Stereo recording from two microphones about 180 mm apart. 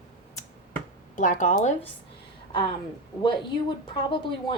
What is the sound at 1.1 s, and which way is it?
Speech, 45° left (ahead or behind).